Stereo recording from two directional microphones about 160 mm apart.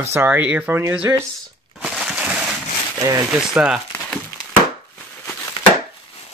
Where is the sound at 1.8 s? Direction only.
5° right (ahead or behind).